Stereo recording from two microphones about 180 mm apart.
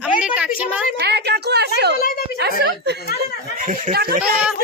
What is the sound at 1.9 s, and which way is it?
Speech, 55° left (ahead or behind).